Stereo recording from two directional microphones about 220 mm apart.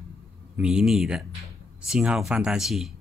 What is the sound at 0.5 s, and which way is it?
Speech, 5° right (ahead or behind).